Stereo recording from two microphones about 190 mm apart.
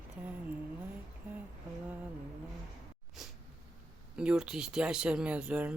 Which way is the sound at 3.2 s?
Centre (ahead or behind).